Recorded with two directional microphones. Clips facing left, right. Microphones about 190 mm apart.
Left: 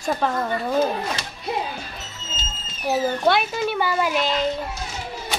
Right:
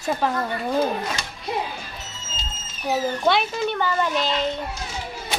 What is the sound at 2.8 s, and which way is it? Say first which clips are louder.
A child's voice: left 1 dB; 5° left (ahead or behind).